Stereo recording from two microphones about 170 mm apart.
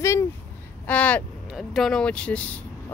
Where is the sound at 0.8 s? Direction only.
10° left (ahead or behind).